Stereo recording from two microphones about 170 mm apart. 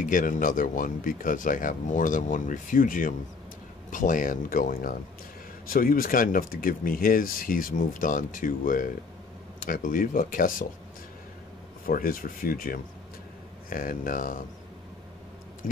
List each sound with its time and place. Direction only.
0.0 s speech: 55° left (ahead or behind)
11.8 s speech: 60° left (ahead or behind)
15.6 s tick-tock: 55° left (ahead or behind)